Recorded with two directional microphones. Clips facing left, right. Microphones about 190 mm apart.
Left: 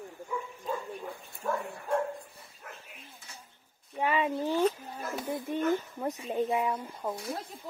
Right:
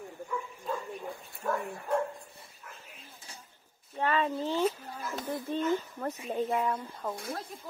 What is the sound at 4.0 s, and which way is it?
Speech, 15° left (ahead or behind).